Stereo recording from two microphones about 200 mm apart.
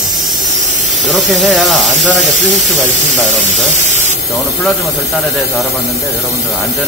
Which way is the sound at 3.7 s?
35° right (ahead or behind).